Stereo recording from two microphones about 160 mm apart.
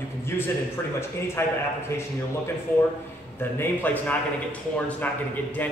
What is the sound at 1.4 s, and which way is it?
Speech, 15° left (ahead or behind).